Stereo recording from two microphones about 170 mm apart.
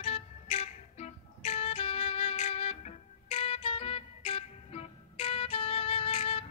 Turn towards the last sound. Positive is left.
turn(degrees=35)  # may be behind; listen again after turning